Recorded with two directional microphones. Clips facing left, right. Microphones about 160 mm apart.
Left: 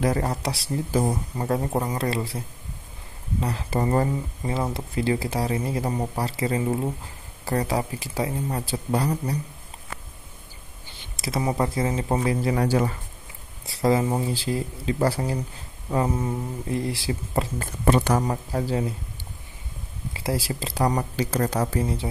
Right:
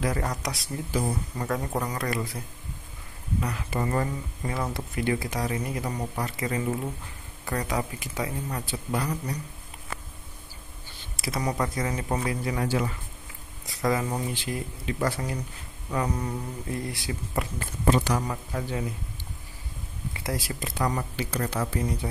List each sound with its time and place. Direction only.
0.0 s speech: 30° left (ahead or behind)
4.4 s speech: 20° left (ahead or behind)
11.1 s speech: 25° left (ahead or behind)
13.7 s speech: 30° left (ahead or behind)
17.8 s speech: 55° left (ahead or behind)
18.2 s speech: 35° left (ahead or behind)
20.2 s speech: 30° left (ahead or behind)